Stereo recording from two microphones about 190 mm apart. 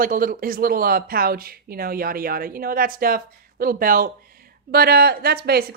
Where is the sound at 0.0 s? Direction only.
50° right (ahead or behind).